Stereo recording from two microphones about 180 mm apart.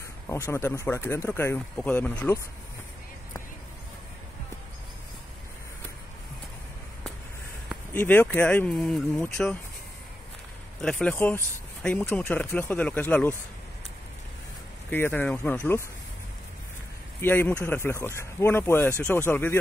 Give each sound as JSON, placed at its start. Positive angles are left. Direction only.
{"t": 0.3, "sound": "speech", "side_deg": 15}
{"t": 7.9, "sound": "speech", "side_deg": 10}
{"t": 10.8, "sound": "speech", "side_deg": 5}
{"t": 14.9, "sound": "speech", "side_deg": 10}
{"t": 17.2, "sound": "speech", "side_deg": 10}